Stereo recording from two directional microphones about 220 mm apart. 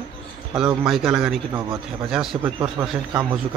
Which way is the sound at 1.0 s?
10° right (ahead or behind).